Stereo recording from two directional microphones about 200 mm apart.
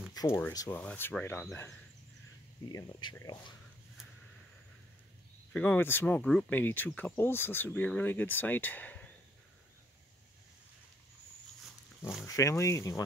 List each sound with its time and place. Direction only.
0.1 s a sound: 20° left (ahead or behind)
0.5 s speech: 15° left (ahead or behind)
2.7 s speech: 20° left (ahead or behind)
5.5 s speech: 5° left (ahead or behind)
12.3 s speech: 15° left (ahead or behind)